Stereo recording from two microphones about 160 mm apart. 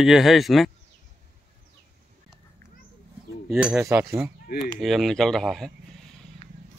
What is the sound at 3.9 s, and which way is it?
Speech, 15° right (ahead or behind).